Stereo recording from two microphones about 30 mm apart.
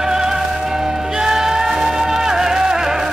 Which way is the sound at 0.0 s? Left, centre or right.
Centre.